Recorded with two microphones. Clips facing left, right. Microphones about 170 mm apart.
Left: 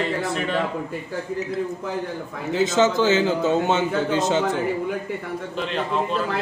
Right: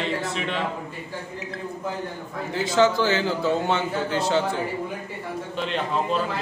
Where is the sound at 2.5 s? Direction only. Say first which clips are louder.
Left 1 dB; 20° left (ahead or behind).